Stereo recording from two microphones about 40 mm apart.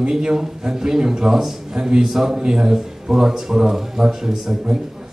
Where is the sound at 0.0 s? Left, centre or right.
Centre.